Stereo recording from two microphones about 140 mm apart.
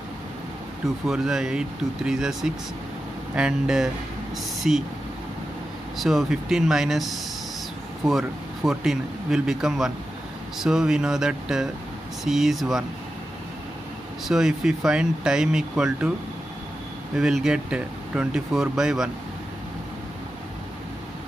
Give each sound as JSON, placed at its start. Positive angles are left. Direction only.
{"t": 0.8, "sound": "speech", "side_deg": -5}
{"t": 5.9, "sound": "speech", "side_deg": 0}
{"t": 14.2, "sound": "speech", "side_deg": -5}
{"t": 17.1, "sound": "speech", "side_deg": -5}